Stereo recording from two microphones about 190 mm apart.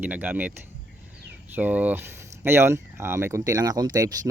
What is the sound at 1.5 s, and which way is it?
Speech, 10° right (ahead or behind).